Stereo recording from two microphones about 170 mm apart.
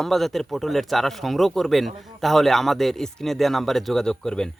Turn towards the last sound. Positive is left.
turn(degrees=5)  # may be behind; listen again after turning